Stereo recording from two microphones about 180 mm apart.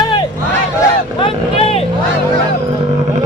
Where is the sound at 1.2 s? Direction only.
30° left (ahead or behind).